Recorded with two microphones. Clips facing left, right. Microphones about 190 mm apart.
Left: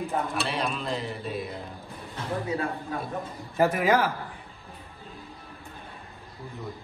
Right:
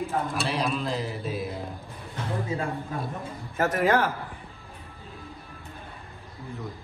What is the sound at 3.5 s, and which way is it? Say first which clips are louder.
Speech: left 1 dB; 10° left (ahead or behind).